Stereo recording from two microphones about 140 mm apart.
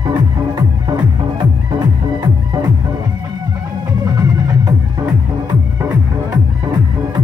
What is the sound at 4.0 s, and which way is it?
Music, 25° right (ahead or behind).